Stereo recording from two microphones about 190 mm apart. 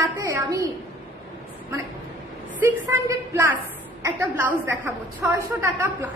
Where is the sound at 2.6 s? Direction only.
15° right (ahead or behind).